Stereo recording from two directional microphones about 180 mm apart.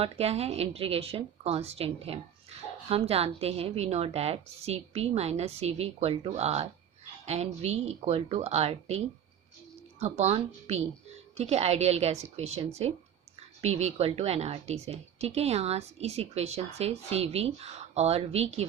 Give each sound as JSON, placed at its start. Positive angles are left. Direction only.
{"t": 0.0, "sound": "speech", "side_deg": -35}
{"t": 10.0, "sound": "speech", "side_deg": -35}